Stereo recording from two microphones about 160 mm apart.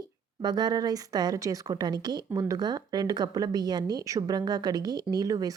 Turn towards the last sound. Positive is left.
turn(degrees=-25)  # may be behind; listen again after turning